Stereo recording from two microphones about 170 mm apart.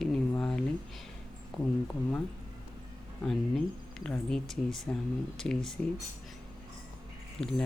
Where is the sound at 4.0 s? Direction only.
5° left (ahead or behind).